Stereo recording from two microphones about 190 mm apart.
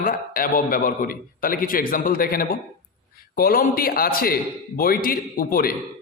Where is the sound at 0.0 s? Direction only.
50° left (ahead or behind).